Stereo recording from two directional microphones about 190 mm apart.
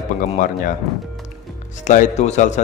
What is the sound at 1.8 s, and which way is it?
Speech, 40° left (ahead or behind).